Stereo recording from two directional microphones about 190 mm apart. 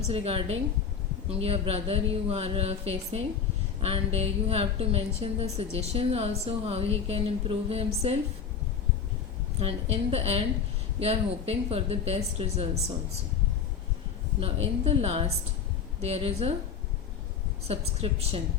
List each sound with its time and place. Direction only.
0.1 s speech: 30° right (ahead or behind)
9.9 s speech: 30° right (ahead or behind)
14.3 s speech: 30° right (ahead or behind)
17.7 s speech: 30° right (ahead or behind)